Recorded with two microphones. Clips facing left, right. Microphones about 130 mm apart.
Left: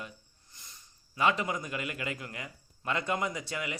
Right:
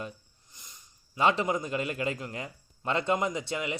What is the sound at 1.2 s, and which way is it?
A man's voice, 30° right (ahead or behind).